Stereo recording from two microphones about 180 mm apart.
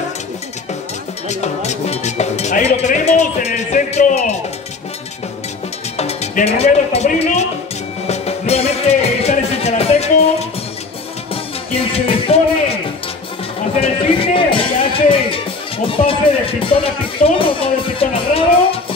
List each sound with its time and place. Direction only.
1.3 s cowbell: 40° left (ahead or behind)
5.9 s speech: 35° left (ahead or behind)
8.1 s music: 35° left (ahead or behind)
11.9 s music: 30° left (ahead or behind)
13.7 s music: 30° left (ahead or behind)
15.9 s speech: 30° left (ahead or behind)